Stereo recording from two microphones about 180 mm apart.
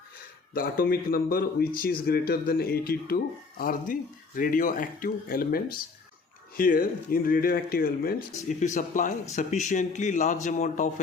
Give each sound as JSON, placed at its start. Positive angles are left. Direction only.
{"t": 0.5, "sound": "speech", "side_deg": 55}
{"t": 8.4, "sound": "speech", "side_deg": 45}